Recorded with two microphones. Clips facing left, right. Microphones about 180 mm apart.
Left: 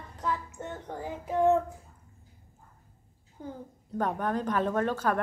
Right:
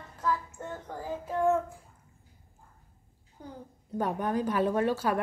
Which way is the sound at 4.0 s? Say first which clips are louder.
Even; 10° right (ahead or behind).